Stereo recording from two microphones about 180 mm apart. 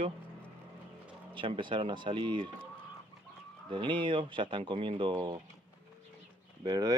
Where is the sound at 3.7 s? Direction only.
25° right (ahead or behind).